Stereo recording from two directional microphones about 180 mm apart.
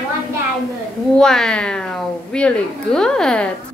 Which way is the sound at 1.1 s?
5° left (ahead or behind).